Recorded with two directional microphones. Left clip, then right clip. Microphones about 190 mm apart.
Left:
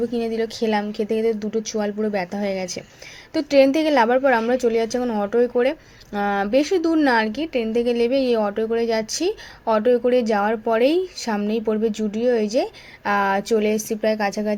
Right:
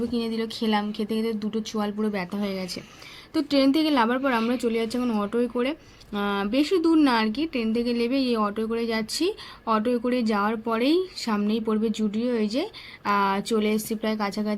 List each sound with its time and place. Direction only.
0.2 s speech: 10° left (ahead or behind)